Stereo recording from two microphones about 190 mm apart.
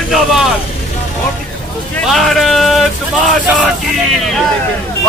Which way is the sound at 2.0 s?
Centre (ahead or behind).